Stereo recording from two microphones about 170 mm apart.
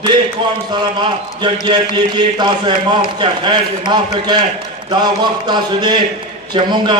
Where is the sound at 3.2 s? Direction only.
25° right (ahead or behind).